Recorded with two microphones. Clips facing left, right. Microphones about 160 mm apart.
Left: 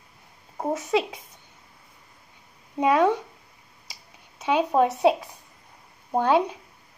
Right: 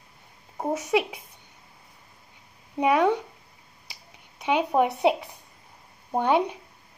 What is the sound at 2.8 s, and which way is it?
Speech, 15° right (ahead or behind).